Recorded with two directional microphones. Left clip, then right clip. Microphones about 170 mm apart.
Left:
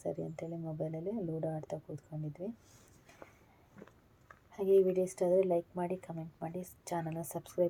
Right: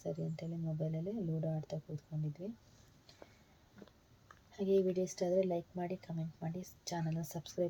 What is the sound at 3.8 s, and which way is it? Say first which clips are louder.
Speech: left 3 dB; 25° left (ahead or behind).